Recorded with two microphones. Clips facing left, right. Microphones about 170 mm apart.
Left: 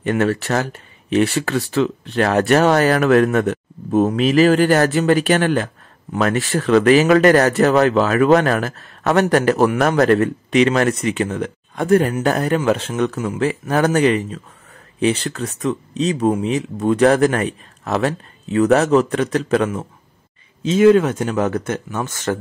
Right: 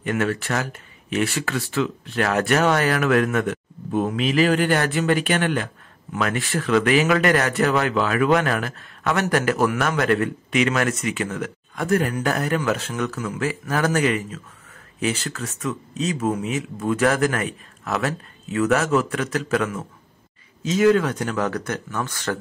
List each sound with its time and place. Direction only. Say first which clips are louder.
0.0 s speech: left 5 dB; 35° left (ahead or behind)